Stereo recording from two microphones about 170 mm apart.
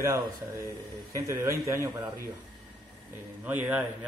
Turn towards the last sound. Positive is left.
turn(degrees=-10)  # may be behind; listen again after turning